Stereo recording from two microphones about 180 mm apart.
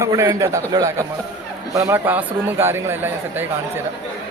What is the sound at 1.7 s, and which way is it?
A man's voice, 15° right (ahead or behind).